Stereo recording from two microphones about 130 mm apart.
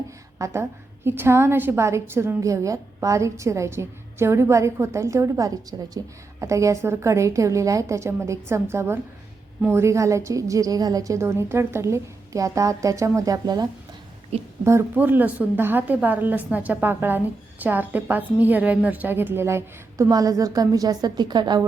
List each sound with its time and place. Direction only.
0.3 s a woman's voice: 20° right (ahead or behind)